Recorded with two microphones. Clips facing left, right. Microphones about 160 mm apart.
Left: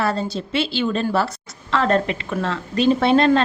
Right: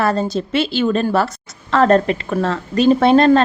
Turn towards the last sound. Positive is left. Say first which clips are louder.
# right 4 dB
turn(degrees=-45)  # may be behind; listen again after turning